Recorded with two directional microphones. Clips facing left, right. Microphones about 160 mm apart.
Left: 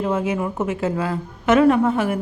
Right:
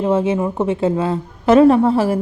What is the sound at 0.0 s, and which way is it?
A woman's voice, 25° right (ahead or behind).